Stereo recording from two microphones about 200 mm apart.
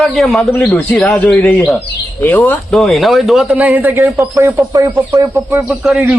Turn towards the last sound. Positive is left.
turn(degrees=-5)  # may be behind; listen again after turning